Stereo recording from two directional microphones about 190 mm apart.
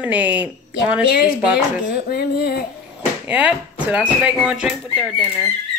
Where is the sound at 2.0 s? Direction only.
55° left (ahead or behind).